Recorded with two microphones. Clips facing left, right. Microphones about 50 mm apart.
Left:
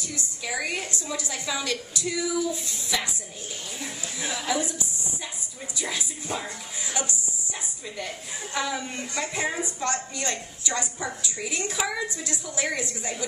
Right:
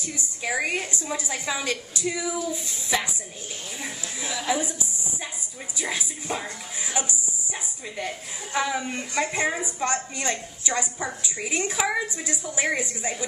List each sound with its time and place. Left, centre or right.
0.0 s a woman's voice: right
4.5 s speech: centre
5.8 s speech: centre
6.8 s music: right
8.0 s a woman's voice: centre